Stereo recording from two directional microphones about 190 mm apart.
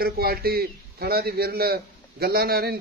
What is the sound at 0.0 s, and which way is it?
A man's voice, 55° right (ahead or behind).